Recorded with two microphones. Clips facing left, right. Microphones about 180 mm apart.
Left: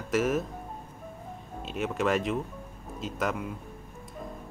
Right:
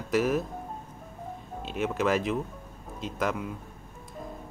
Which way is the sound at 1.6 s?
Centre (ahead or behind).